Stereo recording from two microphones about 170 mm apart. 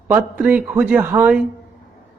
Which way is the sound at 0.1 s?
10° right (ahead or behind).